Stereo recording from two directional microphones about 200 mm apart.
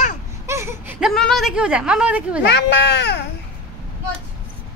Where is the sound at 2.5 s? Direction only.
60° left (ahead or behind).